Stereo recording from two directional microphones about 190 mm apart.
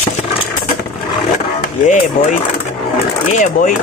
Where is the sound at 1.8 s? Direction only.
40° left (ahead or behind).